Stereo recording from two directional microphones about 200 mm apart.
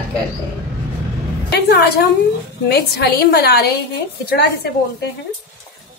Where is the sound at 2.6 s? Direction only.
55° left (ahead or behind).